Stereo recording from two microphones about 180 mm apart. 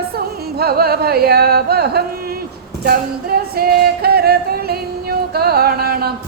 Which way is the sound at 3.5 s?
60° right (ahead or behind).